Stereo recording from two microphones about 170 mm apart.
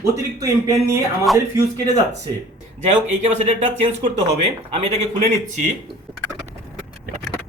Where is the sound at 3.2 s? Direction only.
40° right (ahead or behind).